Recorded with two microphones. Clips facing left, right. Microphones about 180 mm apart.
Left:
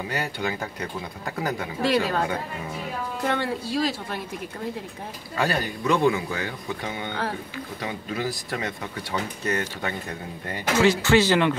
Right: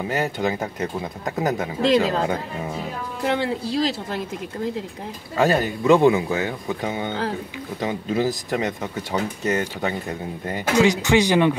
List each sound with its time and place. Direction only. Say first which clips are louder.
0.1 s speech: right 7 dB; 20° right (ahead or behind)
5.5 s speech: right 8 dB; 20° right (ahead or behind)